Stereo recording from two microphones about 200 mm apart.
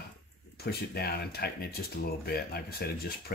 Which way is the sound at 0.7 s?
50° left (ahead or behind).